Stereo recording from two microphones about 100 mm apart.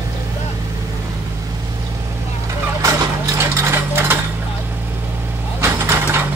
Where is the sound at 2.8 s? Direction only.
30° right (ahead or behind).